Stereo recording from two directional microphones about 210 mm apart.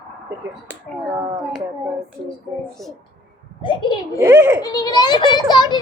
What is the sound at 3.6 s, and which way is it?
Speech, 20° left (ahead or behind).